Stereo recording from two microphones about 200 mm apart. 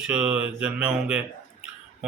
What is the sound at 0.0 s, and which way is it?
A man's voice, 5° right (ahead or behind).